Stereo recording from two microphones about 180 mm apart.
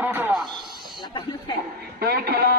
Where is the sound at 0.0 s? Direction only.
10° right (ahead or behind).